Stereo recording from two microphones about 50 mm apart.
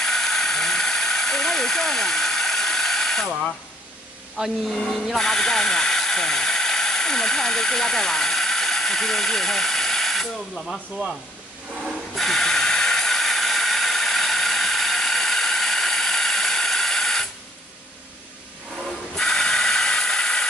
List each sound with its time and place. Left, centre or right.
0.0 s a sound: centre
4.4 s speech: centre
5.0 s speech: centre
11.7 s a sound: centre
12.2 s hiss: centre
18.9 s hiss: centre